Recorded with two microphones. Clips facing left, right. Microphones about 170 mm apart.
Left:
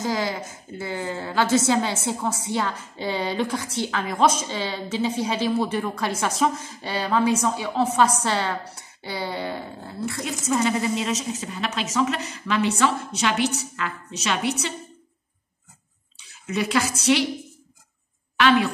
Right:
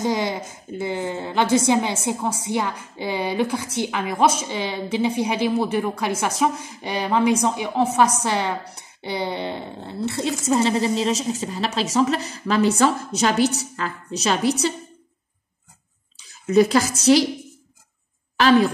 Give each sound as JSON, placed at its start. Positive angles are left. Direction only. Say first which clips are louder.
{"t": 0.0, "sound": "a woman's voice", "louder": "right 3 dB", "side_deg": -20}
{"t": 16.2, "sound": "a sound", "louder": "right 10 dB", "side_deg": -40}
{"t": 17.0, "sound": "speech", "louder": "right 6 dB", "side_deg": -40}
{"t": 18.4, "sound": "speech", "louder": "right 3 dB", "side_deg": -35}